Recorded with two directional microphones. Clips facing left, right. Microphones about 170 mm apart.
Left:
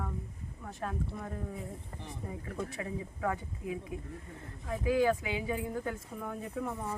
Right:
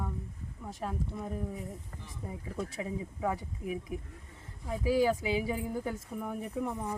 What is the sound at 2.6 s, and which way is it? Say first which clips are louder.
Speech: right 2 dB; 15° right (ahead or behind).